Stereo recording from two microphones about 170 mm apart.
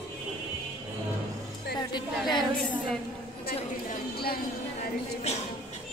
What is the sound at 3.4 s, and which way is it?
Speech, 60° left (ahead or behind).